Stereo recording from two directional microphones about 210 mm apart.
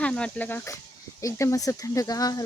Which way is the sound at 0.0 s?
5° left (ahead or behind).